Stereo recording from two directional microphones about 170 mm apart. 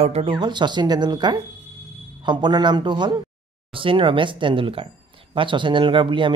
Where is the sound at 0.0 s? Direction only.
35° right (ahead or behind).